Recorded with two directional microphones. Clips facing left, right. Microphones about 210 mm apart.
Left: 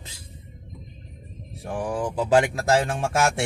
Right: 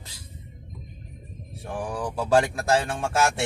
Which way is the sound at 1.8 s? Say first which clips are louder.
Left 4 dB; 25° left (ahead or behind).